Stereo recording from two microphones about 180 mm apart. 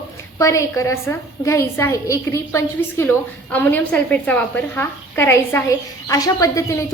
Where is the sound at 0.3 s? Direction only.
15° left (ahead or behind).